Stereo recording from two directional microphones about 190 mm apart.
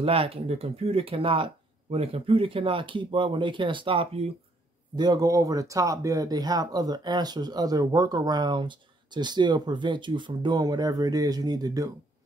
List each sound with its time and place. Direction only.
0.0 s speech: 30° right (ahead or behind)